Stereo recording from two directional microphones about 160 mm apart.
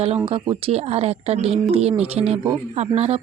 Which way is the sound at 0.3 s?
35° right (ahead or behind).